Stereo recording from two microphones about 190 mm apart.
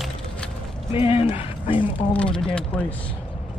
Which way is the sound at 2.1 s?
5° left (ahead or behind).